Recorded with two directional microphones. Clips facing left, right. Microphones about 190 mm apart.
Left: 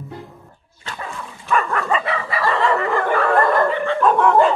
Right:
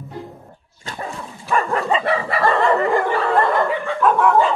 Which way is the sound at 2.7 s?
25° right (ahead or behind).